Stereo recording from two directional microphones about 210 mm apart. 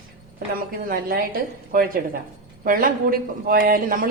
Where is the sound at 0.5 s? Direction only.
45° right (ahead or behind).